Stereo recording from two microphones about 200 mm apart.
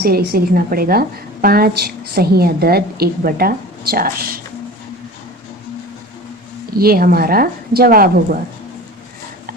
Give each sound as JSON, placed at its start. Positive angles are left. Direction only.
{"t": 0.0, "sound": "a woman's voice", "side_deg": -50}
{"t": 6.7, "sound": "a woman's voice", "side_deg": -50}